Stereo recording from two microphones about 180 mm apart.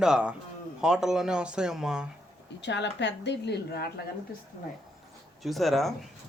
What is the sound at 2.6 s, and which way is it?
Speech, 75° left (ahead or behind).